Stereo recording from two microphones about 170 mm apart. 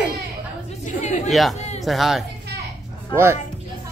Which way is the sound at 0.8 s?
45° left (ahead or behind).